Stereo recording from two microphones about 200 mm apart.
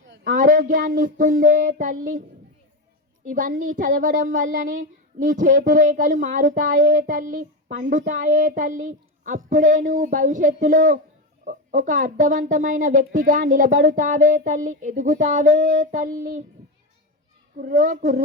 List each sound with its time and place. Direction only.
0.3 s child singing: 45° right (ahead or behind)
3.2 s child singing: 45° right (ahead or behind)
9.5 s speech: 40° right (ahead or behind)
17.6 s child singing: 45° right (ahead or behind)